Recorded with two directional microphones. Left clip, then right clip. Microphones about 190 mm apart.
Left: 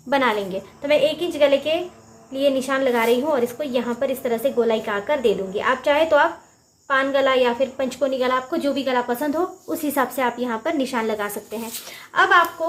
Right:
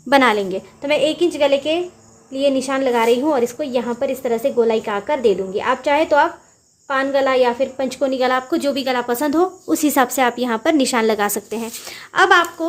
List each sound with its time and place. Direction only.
0.1 s a woman's voice: 55° right (ahead or behind)